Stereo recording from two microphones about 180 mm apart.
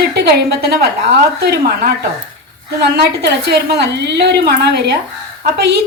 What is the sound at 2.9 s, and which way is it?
A woman's voice, 65° right (ahead or behind).